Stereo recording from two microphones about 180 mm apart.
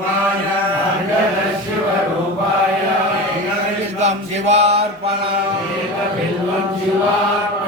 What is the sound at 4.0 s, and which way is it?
Mantra, 35° right (ahead or behind).